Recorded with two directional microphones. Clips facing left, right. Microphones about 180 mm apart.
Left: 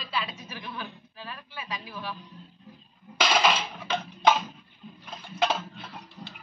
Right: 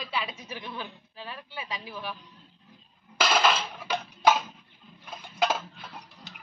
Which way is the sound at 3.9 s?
5° right (ahead or behind).